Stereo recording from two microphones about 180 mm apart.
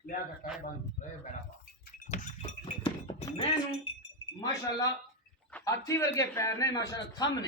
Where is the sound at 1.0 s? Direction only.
45° left (ahead or behind).